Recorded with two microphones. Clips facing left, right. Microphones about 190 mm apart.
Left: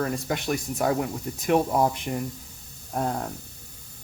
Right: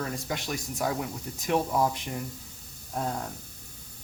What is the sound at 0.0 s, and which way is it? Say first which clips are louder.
Speech: left 6 dB; 55° left (ahead or behind).